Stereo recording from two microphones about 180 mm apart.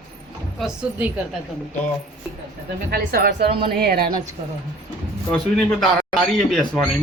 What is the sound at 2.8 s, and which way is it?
Speech, 55° right (ahead or behind).